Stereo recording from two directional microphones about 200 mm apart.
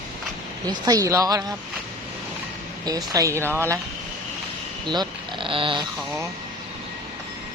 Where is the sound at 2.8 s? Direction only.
20° right (ahead or behind).